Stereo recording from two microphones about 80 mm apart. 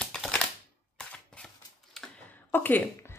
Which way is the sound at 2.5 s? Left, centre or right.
Left.